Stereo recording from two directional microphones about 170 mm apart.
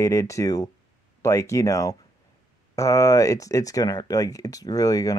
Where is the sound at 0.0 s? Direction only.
15° left (ahead or behind).